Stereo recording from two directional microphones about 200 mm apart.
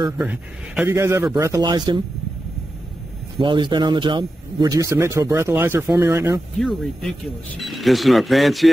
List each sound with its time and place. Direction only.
0.2 s speech: 10° right (ahead or behind)
3.3 s speech: 25° right (ahead or behind)
6.6 s speech: centre (ahead or behind)